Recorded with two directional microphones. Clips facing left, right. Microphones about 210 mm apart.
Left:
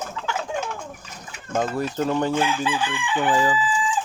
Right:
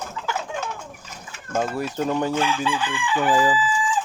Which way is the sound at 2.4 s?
15° left (ahead or behind).